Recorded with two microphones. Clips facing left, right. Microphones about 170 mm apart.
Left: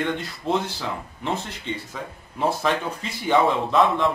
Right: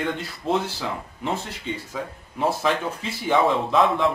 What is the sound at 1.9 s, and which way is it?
A man's voice, centre (ahead or behind).